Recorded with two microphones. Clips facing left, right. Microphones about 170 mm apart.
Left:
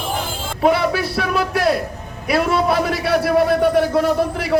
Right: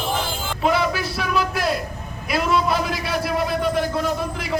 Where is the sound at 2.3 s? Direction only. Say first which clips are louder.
Left 3 dB; 60° left (ahead or behind).